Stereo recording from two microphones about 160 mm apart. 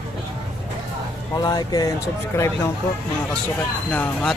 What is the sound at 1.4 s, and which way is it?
Speech, 25° left (ahead or behind).